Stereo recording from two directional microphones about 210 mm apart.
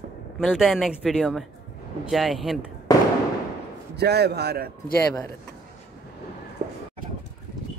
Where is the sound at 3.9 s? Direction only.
50° right (ahead or behind).